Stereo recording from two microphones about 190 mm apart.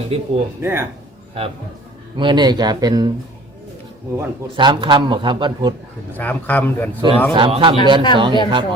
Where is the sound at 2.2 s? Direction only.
25° right (ahead or behind).